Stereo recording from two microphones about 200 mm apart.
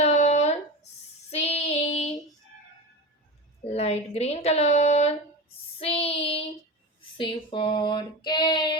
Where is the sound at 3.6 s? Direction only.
30° left (ahead or behind).